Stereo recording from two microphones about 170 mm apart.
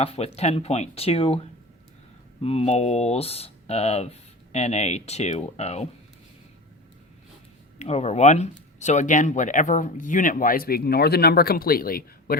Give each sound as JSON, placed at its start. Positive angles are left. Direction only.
{"t": 0.0, "sound": "speech", "side_deg": 35}
{"t": 7.8, "sound": "speech", "side_deg": 40}